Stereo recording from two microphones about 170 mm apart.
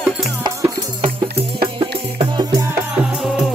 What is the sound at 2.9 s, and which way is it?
Music, 5° right (ahead or behind).